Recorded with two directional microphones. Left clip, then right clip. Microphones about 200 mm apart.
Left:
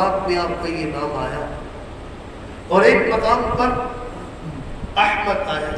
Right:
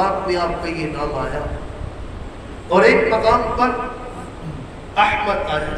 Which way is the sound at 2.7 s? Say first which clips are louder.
Right 1 dB; 10° left (ahead or behind).